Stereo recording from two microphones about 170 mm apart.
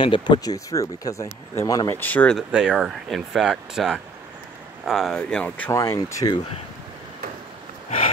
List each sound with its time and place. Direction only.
0.0 s speech: 30° left (ahead or behind)
2.0 s speech: 10° left (ahead or behind)
2.5 s speech: 5° right (ahead or behind)
5.7 s speech: 20° left (ahead or behind)